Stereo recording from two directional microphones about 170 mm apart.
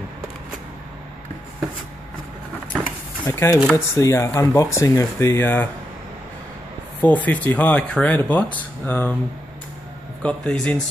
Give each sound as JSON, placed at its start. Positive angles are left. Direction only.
{"t": 3.3, "sound": "speech", "side_deg": 15}
{"t": 7.0, "sound": "speech", "side_deg": 10}
{"t": 10.2, "sound": "speech", "side_deg": 5}